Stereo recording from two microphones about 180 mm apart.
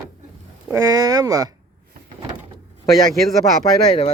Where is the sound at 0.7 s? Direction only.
20° right (ahead or behind).